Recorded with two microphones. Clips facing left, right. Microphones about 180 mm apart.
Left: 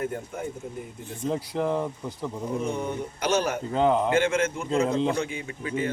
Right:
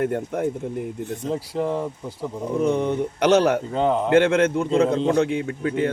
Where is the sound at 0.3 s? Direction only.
65° right (ahead or behind).